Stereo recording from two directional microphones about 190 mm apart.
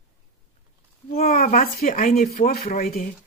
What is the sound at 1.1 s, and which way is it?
Speech, 45° left (ahead or behind).